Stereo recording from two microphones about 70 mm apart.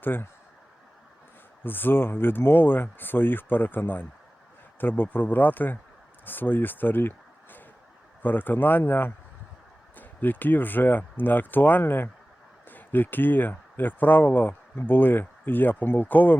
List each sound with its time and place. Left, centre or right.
0.0 s speech: left
1.6 s speech: left
8.2 s speech: left